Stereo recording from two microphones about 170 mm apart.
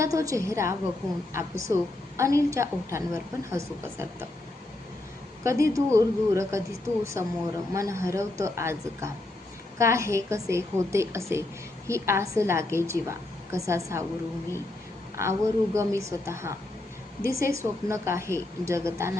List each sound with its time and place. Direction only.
0.0 s a woman's voice: 20° right (ahead or behind)
5.4 s a woman's voice: 15° right (ahead or behind)
15.1 s a woman's voice: 15° right (ahead or behind)